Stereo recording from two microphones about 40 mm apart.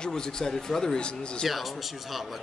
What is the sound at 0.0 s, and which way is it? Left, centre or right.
Speech, centre.